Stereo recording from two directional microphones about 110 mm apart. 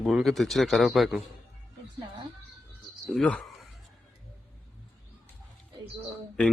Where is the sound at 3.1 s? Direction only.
5° left (ahead or behind).